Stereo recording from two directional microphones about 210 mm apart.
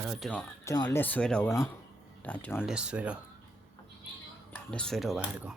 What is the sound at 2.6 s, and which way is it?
Speech, 5° right (ahead or behind).